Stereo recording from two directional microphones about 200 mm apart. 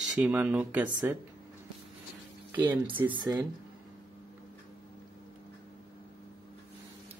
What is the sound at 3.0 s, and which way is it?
Speech, 15° right (ahead or behind).